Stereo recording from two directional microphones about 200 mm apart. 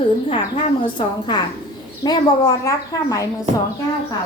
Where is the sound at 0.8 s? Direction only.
25° left (ahead or behind).